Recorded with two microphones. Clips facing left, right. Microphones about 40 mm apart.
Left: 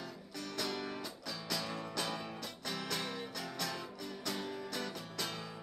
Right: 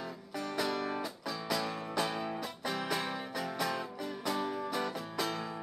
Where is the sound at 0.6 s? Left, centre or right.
Centre.